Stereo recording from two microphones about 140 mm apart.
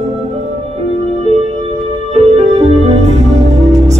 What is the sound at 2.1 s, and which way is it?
Music, 45° right (ahead or behind).